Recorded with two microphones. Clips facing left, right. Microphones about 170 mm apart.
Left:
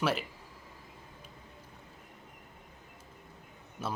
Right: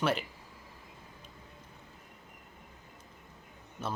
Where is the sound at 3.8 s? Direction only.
10° left (ahead or behind).